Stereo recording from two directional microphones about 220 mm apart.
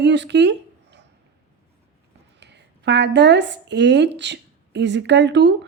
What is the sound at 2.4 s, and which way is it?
A woman's voice, 50° right (ahead or behind).